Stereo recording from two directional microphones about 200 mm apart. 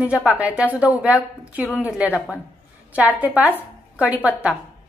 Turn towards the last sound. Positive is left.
turn(degrees=-5)  # may be behind; listen again after turning